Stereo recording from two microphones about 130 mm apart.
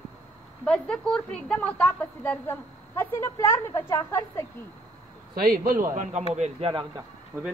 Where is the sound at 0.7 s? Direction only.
10° left (ahead or behind).